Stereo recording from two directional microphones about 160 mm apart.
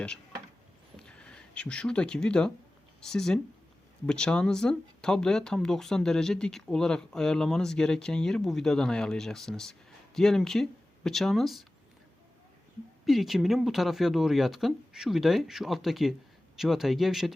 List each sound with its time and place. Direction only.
0.9 s a sound: 5° left (ahead or behind)
3.0 s speech: 5° left (ahead or behind)
13.1 s speech: centre (ahead or behind)